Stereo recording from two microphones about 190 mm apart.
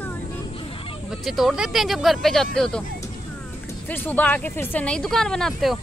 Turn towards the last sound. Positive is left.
turn(degrees=0)  # may be behind; listen again after turning